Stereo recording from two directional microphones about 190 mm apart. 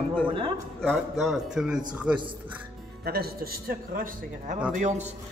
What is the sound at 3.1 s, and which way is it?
A man's voice, 55° right (ahead or behind).